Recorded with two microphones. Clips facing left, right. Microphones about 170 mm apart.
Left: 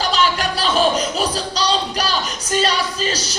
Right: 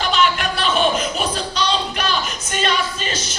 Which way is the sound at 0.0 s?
35° left (ahead or behind).